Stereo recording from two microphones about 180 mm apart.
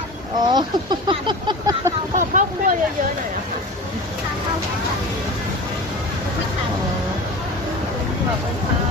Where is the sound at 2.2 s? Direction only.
45° right (ahead or behind).